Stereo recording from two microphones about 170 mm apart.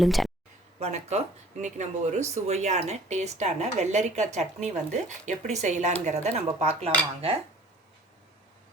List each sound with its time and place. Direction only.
0.0 s speech: centre (ahead or behind)
0.8 s speech: 40° right (ahead or behind)